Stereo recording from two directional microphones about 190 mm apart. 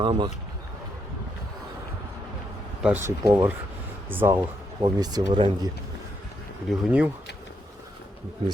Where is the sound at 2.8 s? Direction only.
10° right (ahead or behind).